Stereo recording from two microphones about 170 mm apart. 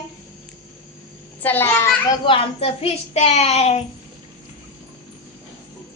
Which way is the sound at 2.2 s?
35° left (ahead or behind).